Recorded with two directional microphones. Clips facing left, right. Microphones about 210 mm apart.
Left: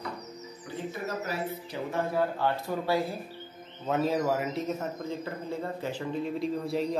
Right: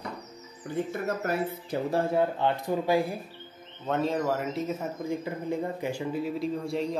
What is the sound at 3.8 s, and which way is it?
A man's voice, 5° left (ahead or behind).